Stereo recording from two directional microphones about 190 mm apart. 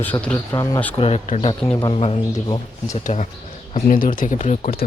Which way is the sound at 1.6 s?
15° left (ahead or behind).